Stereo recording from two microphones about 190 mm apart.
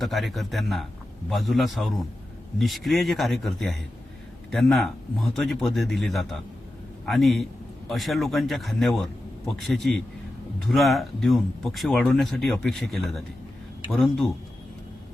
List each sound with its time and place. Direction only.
0.0 s a man's voice: centre (ahead or behind)